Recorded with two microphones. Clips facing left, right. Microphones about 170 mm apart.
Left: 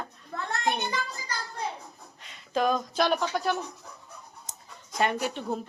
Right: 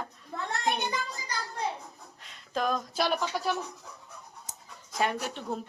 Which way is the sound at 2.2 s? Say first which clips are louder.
Left 4 dB; centre (ahead or behind).